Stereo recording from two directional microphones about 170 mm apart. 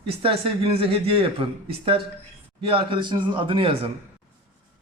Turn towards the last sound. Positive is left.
turn(degrees=-30)  # may be behind; listen again after turning